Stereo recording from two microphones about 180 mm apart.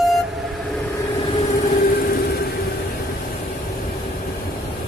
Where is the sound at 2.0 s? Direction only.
60° left (ahead or behind).